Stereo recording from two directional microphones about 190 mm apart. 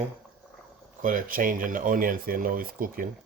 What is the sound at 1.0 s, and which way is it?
Speech, 45° right (ahead or behind).